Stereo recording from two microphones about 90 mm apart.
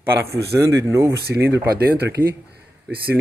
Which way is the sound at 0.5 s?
35° right (ahead or behind).